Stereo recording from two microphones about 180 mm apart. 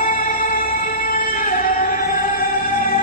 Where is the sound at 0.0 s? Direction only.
50° left (ahead or behind).